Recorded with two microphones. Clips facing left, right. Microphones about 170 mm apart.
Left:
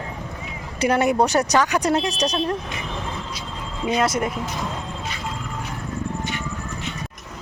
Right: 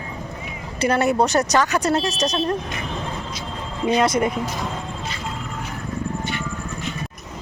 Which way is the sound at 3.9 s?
5° left (ahead or behind).